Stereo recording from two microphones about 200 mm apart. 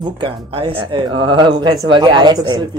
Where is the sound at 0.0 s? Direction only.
25° right (ahead or behind).